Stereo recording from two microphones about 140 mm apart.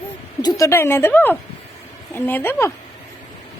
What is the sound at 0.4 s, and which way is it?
Speech, 25° left (ahead or behind).